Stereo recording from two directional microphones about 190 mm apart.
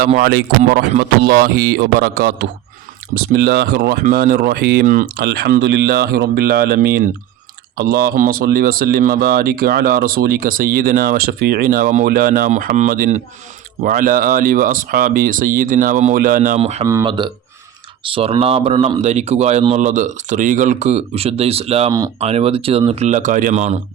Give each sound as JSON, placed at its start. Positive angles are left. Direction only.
{"t": 0.2, "sound": "speech", "side_deg": -55}
{"t": 16.8, "sound": "speech", "side_deg": -20}